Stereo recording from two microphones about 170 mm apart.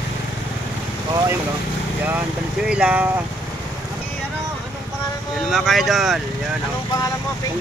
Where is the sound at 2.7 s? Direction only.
5° right (ahead or behind).